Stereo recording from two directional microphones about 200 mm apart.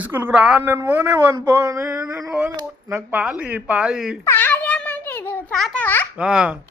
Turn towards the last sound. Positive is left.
turn(degrees=-5)  # may be behind; listen again after turning